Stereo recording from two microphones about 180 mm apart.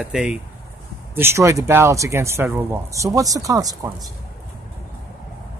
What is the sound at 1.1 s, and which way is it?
Speech, 15° right (ahead or behind).